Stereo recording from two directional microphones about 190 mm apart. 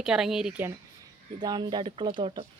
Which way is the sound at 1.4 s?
25° right (ahead or behind).